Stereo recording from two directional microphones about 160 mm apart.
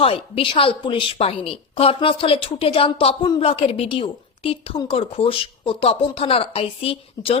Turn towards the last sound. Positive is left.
turn(degrees=35)  # may be behind; listen again after turning